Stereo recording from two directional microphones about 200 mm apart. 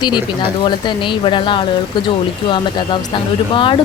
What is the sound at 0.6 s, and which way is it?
Speech, 25° left (ahead or behind).